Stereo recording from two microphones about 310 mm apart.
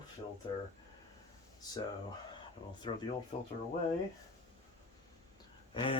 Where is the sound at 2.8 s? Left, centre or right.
Centre.